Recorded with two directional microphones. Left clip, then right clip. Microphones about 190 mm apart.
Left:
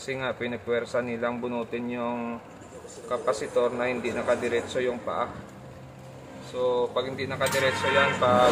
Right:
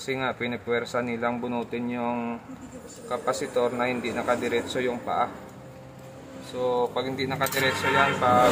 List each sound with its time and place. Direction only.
0.0 s speech: 15° right (ahead or behind)
6.6 s speech: 15° right (ahead or behind)